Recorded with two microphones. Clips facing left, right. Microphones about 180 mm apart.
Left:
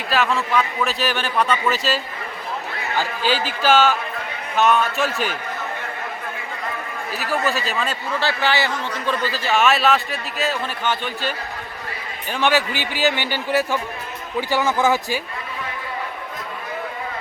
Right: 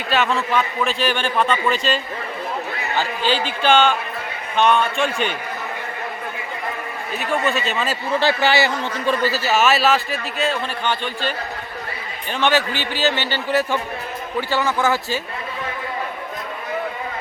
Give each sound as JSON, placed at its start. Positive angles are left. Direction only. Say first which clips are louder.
{"t": 0.1, "sound": "a man's voice", "louder": "right 1 dB", "side_deg": 0}
{"t": 3.0, "sound": "a man's voice", "louder": "right 1 dB", "side_deg": 10}
{"t": 7.2, "sound": "a man's voice", "louder": "right 1 dB", "side_deg": 0}
{"t": 8.2, "sound": "a man's voice", "louder": "right 3 dB", "side_deg": -15}
{"t": 12.3, "sound": "a man's voice", "louder": "even", "side_deg": 10}